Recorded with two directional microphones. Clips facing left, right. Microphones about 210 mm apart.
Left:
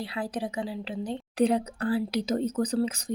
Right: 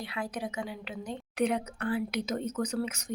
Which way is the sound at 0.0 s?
30° left (ahead or behind).